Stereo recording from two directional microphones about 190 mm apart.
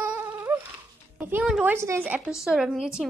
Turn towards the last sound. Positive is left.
turn(degrees=-5)  # may be behind; listen again after turning